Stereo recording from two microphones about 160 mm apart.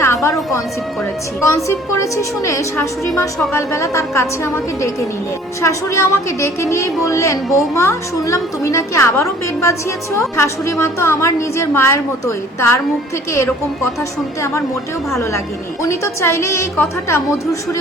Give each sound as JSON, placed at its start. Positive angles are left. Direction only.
{"t": 0.0, "sound": "music", "side_deg": 20}
{"t": 1.4, "sound": "a woman's voice", "side_deg": 20}
{"t": 15.8, "sound": "a woman's voice", "side_deg": 20}